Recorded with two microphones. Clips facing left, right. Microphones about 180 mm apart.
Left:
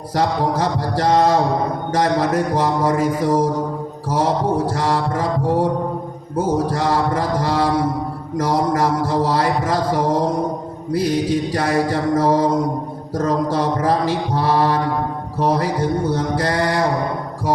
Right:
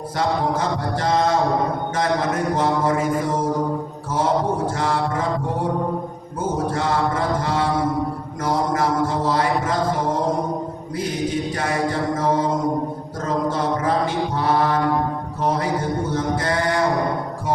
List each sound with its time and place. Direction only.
0.2 s music: 35° left (ahead or behind)
6.3 s music: 35° left (ahead or behind)
15.4 s mantra: 35° left (ahead or behind)